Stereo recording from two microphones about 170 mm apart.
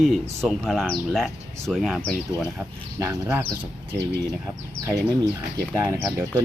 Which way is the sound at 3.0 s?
15° right (ahead or behind).